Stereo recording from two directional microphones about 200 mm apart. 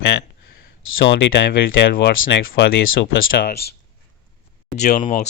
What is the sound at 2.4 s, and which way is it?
Speech, 45° left (ahead or behind).